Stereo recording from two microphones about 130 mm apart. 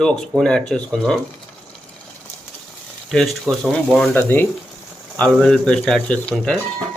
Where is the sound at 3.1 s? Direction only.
5° left (ahead or behind).